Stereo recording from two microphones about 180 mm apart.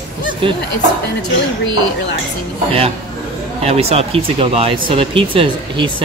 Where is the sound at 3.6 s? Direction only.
35° right (ahead or behind).